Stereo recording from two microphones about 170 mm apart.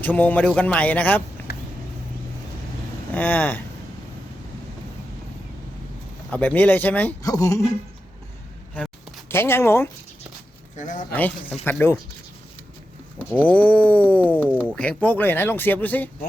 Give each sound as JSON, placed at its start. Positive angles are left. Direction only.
{"t": 0.0, "sound": "speech", "side_deg": 10}
{"t": 3.2, "sound": "speech", "side_deg": 10}
{"t": 6.3, "sound": "speech", "side_deg": 10}
{"t": 7.2, "sound": "speech", "side_deg": 20}
{"t": 8.7, "sound": "a sound", "side_deg": 0}
{"t": 9.3, "sound": "speech", "side_deg": 15}
{"t": 10.8, "sound": "speech", "side_deg": 50}
{"t": 11.6, "sound": "speech", "side_deg": 10}
{"t": 13.1, "sound": "a sound", "side_deg": -10}
{"t": 13.5, "sound": "speech", "side_deg": 10}